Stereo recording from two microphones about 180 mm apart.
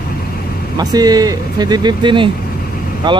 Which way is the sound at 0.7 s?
20° right (ahead or behind).